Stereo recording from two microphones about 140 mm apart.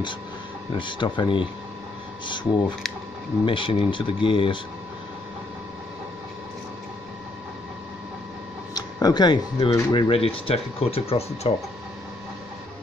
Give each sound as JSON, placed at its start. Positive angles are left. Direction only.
{"t": 0.7, "sound": "speech", "side_deg": 35}
{"t": 8.7, "sound": "speech", "side_deg": 30}
{"t": 9.7, "sound": "speech", "side_deg": 40}